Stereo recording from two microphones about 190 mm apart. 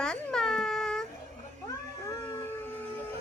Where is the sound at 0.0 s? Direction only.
5° left (ahead or behind).